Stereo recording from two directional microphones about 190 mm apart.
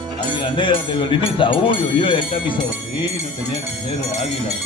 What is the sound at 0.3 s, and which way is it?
Speech, 25° left (ahead or behind).